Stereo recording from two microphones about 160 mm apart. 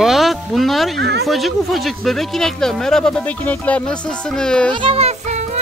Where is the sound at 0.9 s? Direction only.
90° right.